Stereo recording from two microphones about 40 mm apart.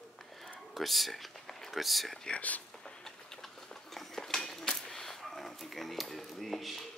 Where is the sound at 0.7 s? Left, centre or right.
Centre.